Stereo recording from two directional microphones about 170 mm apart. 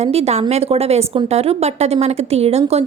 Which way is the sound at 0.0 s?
40° right (ahead or behind).